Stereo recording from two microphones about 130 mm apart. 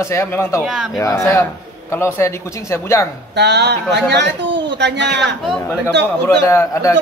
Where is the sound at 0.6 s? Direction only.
5° right (ahead or behind).